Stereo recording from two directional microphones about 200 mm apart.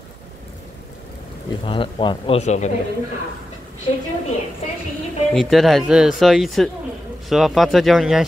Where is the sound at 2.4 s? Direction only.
35° left (ahead or behind).